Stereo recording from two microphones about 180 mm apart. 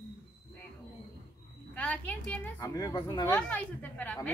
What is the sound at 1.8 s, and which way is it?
Speech, 10° left (ahead or behind).